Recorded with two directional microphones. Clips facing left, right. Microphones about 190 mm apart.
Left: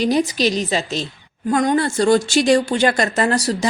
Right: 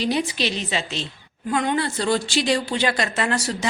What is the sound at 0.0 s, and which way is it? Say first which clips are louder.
A woman's voice: left 6 dB; 40° left (ahead or behind).